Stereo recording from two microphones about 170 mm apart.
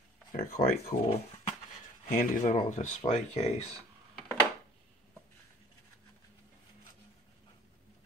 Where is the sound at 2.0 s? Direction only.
45° left (ahead or behind).